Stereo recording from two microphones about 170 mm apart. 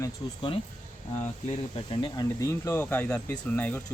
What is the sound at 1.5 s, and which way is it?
Speech, 30° left (ahead or behind).